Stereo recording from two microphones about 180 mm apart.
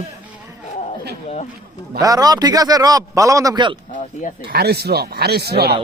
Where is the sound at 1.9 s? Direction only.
20° right (ahead or behind).